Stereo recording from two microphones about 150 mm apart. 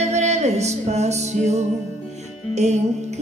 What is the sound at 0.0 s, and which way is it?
Music, 50° right (ahead or behind).